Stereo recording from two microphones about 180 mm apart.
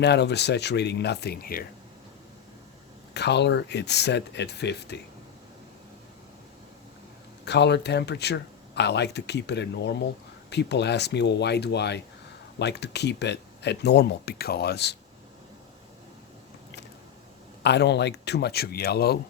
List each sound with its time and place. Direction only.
0.0 s speech: 70° left (ahead or behind)
3.2 s speech: 70° left (ahead or behind)
7.4 s speech: 70° left (ahead or behind)
17.6 s speech: 70° left (ahead or behind)